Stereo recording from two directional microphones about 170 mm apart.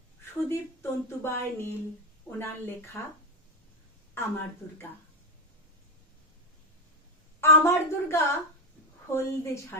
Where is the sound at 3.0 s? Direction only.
15° left (ahead or behind).